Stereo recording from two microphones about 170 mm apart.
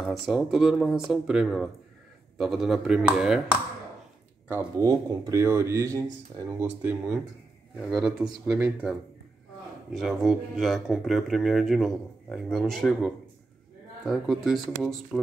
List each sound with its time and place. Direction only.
0.0 s speech: centre (ahead or behind)
4.5 s speech: 10° right (ahead or behind)
9.9 s speech: centre (ahead or behind)